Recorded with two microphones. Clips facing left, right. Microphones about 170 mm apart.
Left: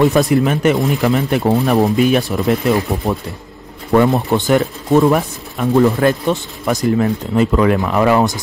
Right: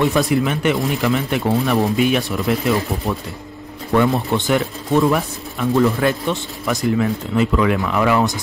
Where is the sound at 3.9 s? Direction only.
40° left (ahead or behind).